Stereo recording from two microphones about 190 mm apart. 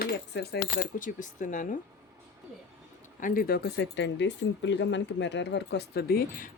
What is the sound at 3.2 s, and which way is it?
Speech, 45° left (ahead or behind).